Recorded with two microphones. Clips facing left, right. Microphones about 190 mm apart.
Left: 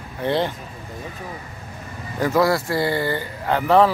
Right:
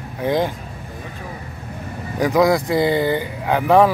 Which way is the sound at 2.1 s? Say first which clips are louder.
Right 3 dB; 15° right (ahead or behind).